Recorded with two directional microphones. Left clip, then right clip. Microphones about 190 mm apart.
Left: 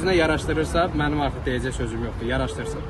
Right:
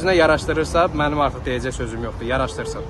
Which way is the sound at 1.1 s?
Centre (ahead or behind).